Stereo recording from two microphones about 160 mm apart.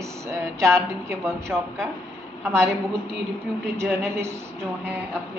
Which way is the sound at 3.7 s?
15° right (ahead or behind).